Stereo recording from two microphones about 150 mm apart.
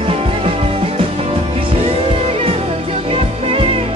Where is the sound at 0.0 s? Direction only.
40° right (ahead or behind).